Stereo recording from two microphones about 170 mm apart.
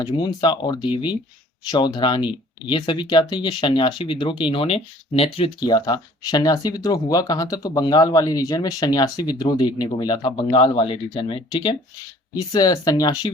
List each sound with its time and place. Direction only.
0.0 s speech: 25° left (ahead or behind)